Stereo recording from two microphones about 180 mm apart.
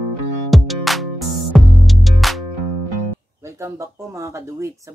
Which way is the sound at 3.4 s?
15° right (ahead or behind).